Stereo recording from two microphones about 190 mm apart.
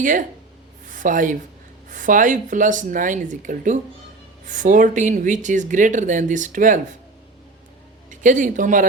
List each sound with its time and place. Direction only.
0.0 s speech: 45° right (ahead or behind)
8.1 s speech: 40° right (ahead or behind)